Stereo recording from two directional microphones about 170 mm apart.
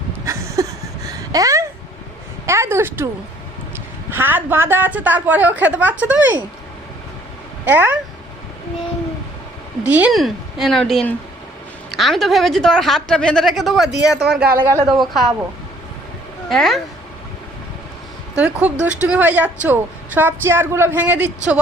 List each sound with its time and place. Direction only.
0.3 s a sound: 20° right (ahead or behind)
2.5 s a woman's voice: 15° right (ahead or behind)
4.1 s a woman's voice: 10° right (ahead or behind)
7.6 s a woman's voice: 10° right (ahead or behind)
9.8 s a woman's voice: 10° right (ahead or behind)
16.5 s a woman's voice: centre (ahead or behind)
18.3 s a woman's voice: 10° right (ahead or behind)